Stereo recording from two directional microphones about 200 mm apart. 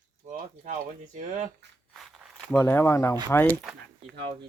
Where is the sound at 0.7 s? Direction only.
40° right (ahead or behind).